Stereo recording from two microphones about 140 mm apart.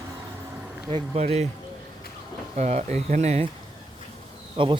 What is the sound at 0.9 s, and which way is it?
Speech, 45° right (ahead or behind).